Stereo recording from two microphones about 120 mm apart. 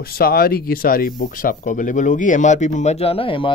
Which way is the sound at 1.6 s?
90° left.